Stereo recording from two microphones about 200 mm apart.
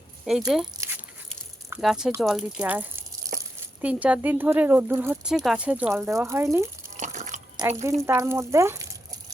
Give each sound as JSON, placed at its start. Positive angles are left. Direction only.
{"t": 0.3, "sound": "speech", "side_deg": 0}
{"t": 0.8, "sound": "dog", "side_deg": -10}
{"t": 1.8, "sound": "speech", "side_deg": 0}
{"t": 6.9, "sound": "water", "side_deg": -35}
{"t": 8.0, "sound": "speech", "side_deg": -15}